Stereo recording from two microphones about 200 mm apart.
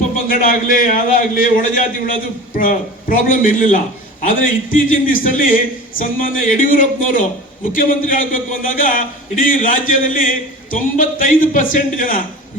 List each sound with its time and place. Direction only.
0.3 s a man's voice: 45° left (ahead or behind)